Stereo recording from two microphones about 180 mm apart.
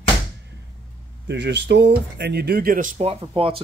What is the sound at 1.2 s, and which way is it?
Speech, 75° right (ahead or behind).